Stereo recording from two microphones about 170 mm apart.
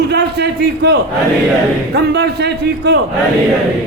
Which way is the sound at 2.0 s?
75° right (ahead or behind).